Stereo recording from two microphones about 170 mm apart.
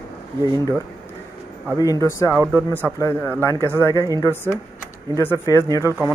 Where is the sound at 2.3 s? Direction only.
15° right (ahead or behind).